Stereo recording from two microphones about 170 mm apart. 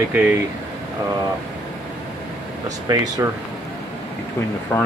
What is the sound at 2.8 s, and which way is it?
Speech, 20° right (ahead or behind).